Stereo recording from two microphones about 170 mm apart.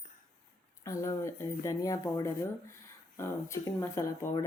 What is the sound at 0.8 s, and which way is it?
Speech, 20° left (ahead or behind).